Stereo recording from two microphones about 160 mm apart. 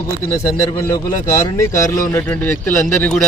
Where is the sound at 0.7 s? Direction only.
20° left (ahead or behind).